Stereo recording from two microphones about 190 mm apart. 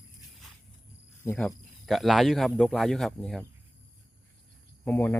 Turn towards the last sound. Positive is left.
turn(degrees=10)  # may be behind; listen again after turning